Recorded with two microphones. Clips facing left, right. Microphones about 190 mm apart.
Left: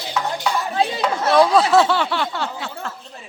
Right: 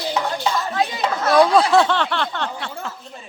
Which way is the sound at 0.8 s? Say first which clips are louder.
Left 2 dB; 30° left (ahead or behind).